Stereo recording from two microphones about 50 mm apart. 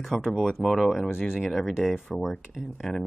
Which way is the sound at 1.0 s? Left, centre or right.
Left.